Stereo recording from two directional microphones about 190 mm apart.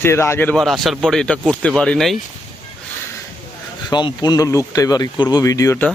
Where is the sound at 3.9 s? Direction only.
20° left (ahead or behind).